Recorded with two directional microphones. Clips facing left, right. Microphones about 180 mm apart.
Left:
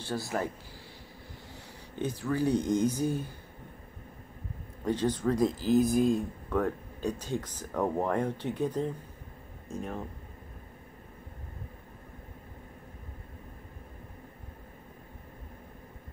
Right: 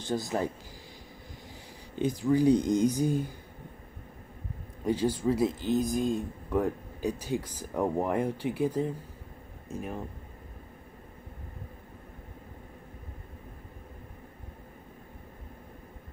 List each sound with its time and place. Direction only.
0.0 s speech: 20° right (ahead or behind)
2.0 s speech: 15° right (ahead or behind)
4.8 s speech: 10° right (ahead or behind)
6.5 s speech: 10° right (ahead or behind)